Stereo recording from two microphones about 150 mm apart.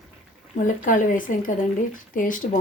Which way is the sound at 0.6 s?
60° left (ahead or behind).